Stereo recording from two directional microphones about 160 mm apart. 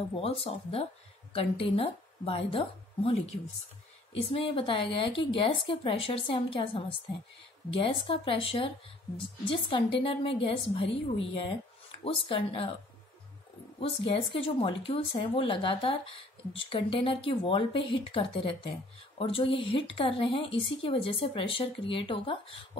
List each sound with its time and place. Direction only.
0.1 s a woman's voice: 35° left (ahead or behind)
4.6 s speech: 35° left (ahead or behind)
13.7 s speech: 35° left (ahead or behind)